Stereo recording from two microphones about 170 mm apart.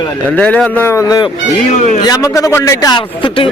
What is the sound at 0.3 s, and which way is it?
A man's voice, 5° left (ahead or behind).